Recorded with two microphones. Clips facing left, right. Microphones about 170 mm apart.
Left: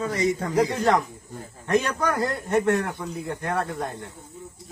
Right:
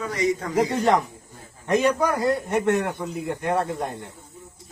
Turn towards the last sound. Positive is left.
turn(degrees=-20)  # may be behind; listen again after turning